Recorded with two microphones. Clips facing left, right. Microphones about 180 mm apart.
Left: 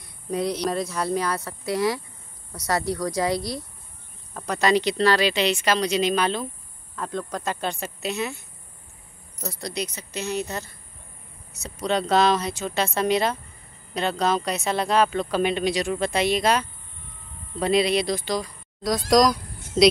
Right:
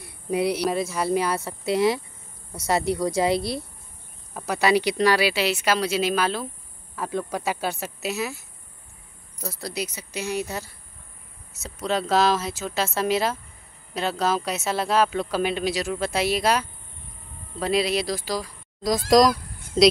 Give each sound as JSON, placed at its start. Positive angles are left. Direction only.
{"t": 0.3, "sound": "speech", "side_deg": -10}
{"t": 1.3, "sound": "a woman's voice", "side_deg": -25}
{"t": 4.3, "sound": "speech", "side_deg": -10}